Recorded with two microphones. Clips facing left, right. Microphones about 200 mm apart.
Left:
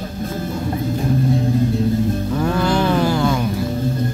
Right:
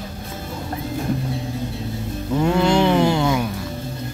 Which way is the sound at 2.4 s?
20° right (ahead or behind).